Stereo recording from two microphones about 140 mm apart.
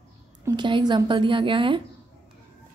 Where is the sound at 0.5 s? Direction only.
35° right (ahead or behind).